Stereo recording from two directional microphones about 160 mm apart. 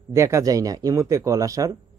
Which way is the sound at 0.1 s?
20° right (ahead or behind).